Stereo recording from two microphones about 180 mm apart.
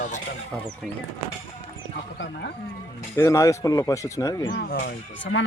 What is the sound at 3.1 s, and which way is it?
Speech, 15° left (ahead or behind).